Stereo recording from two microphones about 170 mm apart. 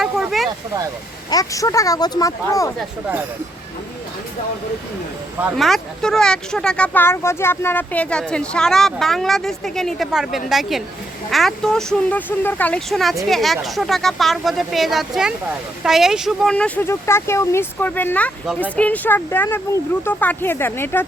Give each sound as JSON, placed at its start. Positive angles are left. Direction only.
{"t": 0.0, "sound": "a sound", "side_deg": 0}
{"t": 1.3, "sound": "speech", "side_deg": 20}
{"t": 5.5, "sound": "speech", "side_deg": 0}